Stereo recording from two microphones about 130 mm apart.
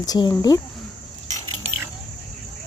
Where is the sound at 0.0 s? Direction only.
30° left (ahead or behind).